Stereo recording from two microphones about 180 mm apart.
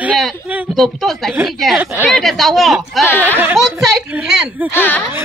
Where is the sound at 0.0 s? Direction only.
5° right (ahead or behind).